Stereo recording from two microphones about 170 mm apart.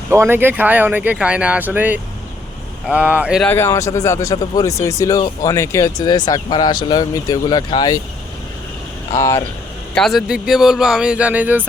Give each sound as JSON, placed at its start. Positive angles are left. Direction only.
{"t": 0.1, "sound": "speech", "side_deg": -15}
{"t": 3.4, "sound": "speech", "side_deg": 15}
{"t": 9.1, "sound": "speech", "side_deg": 15}
{"t": 9.9, "sound": "speech", "side_deg": 0}